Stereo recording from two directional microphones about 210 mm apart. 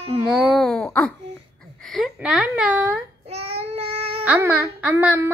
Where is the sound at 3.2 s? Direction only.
30° right (ahead or behind).